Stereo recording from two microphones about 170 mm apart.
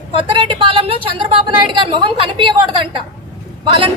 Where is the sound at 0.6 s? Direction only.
30° right (ahead or behind).